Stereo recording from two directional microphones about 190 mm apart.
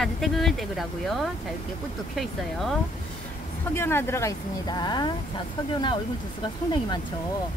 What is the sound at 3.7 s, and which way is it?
Speech, 10° left (ahead or behind).